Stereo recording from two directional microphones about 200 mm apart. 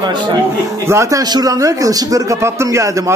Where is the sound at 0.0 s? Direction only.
20° right (ahead or behind).